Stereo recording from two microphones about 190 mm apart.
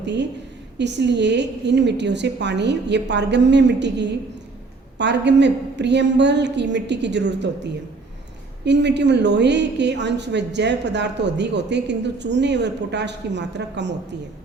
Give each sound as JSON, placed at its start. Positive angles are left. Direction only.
{"t": 0.0, "sound": "a woman's voice", "side_deg": -65}